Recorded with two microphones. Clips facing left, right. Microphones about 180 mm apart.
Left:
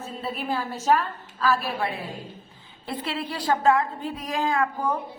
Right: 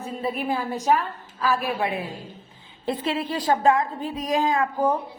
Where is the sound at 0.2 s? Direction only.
15° right (ahead or behind).